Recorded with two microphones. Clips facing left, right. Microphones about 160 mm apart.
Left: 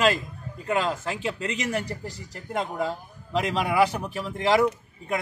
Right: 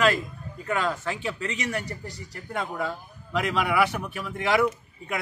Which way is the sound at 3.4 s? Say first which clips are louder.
Left 1 dB; 30° left (ahead or behind).